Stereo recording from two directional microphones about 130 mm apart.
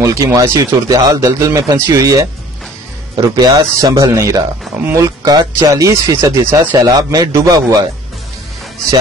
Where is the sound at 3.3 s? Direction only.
30° right (ahead or behind).